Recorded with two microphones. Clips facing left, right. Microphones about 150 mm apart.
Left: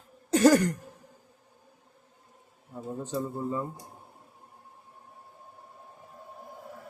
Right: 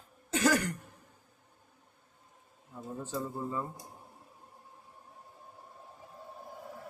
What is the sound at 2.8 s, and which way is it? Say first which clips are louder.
Speech: left 4 dB; 20° left (ahead or behind).